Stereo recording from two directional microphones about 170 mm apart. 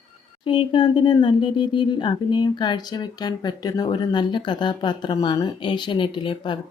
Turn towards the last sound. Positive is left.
turn(degrees=30)  # may be behind; listen again after turning